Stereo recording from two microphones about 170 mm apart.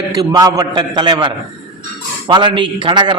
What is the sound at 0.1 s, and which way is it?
A man's voice, 20° right (ahead or behind).